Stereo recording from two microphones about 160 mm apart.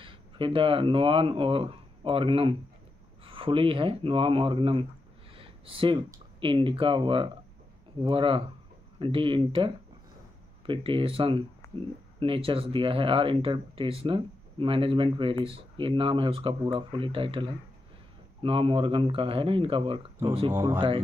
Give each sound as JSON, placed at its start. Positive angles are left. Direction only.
{"t": 0.0, "sound": "speech", "side_deg": -35}
{"t": 5.3, "sound": "a sound", "side_deg": -35}
{"t": 5.9, "sound": "speech", "side_deg": -20}
{"t": 6.4, "sound": "speech", "side_deg": -35}
{"t": 10.7, "sound": "speech", "side_deg": -35}
{"t": 11.6, "sound": "a sound", "side_deg": 15}
{"t": 12.2, "sound": "speech", "side_deg": -35}
{"t": 20.5, "sound": "speech", "side_deg": -15}